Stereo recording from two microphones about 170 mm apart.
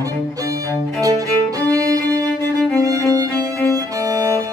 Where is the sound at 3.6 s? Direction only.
15° left (ahead or behind).